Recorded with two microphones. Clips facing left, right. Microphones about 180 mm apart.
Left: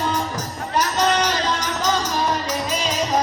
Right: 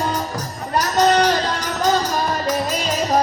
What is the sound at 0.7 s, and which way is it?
Music, 35° right (ahead or behind).